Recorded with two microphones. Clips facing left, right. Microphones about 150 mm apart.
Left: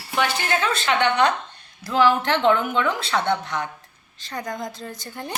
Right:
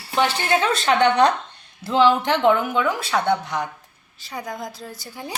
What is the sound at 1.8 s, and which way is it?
A woman's voice, 20° right (ahead or behind).